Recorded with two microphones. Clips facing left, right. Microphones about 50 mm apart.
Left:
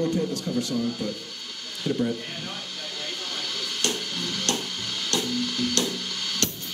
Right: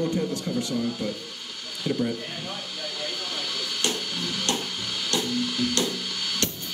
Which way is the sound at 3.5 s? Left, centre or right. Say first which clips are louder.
Even; centre.